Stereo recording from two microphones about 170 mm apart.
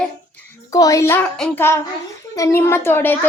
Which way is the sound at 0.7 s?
20° left (ahead or behind).